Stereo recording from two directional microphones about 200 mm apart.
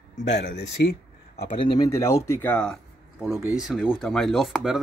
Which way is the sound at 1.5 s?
25° left (ahead or behind).